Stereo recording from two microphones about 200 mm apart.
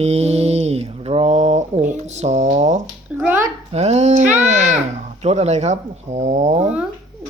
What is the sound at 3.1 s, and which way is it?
Speech, 5° right (ahead or behind).